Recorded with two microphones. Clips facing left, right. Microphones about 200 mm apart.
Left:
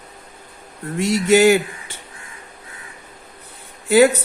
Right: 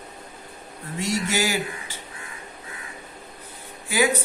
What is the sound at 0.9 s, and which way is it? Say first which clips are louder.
Speech: left 10 dB; 65° left (ahead or behind).